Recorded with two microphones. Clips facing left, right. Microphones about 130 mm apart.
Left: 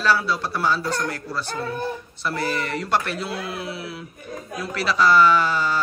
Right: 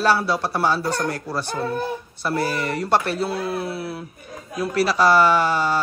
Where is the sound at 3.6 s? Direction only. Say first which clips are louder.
Right 4 dB; 50° right (ahead or behind).